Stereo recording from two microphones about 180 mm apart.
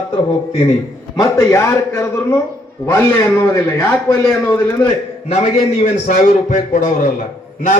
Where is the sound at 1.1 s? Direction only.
20° left (ahead or behind).